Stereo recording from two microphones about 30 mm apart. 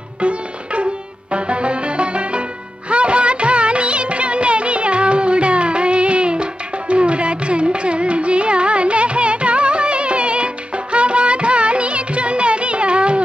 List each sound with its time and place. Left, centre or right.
0.2 s music: right
2.9 s music of bollywood: right